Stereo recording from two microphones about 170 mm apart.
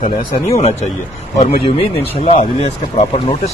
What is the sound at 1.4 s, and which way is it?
Speech, 40° left (ahead or behind).